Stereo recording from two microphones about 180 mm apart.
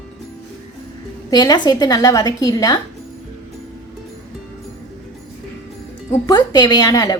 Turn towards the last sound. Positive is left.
turn(degrees=20)  # may be behind; listen again after turning